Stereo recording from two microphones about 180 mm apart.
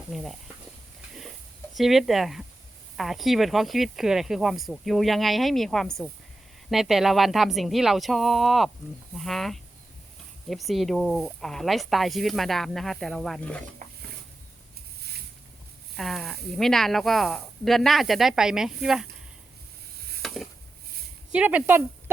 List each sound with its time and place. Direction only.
0.1 s speech: centre (ahead or behind)
1.7 s speech: centre (ahead or behind)
13.8 s stir: 45° right (ahead or behind)
16.0 s speech: centre (ahead or behind)
20.2 s chopping: centre (ahead or behind)
21.3 s speech: 10° right (ahead or behind)